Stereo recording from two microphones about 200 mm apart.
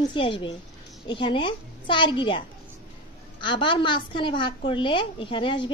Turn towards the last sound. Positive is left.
turn(degrees=25)  # may be behind; listen again after turning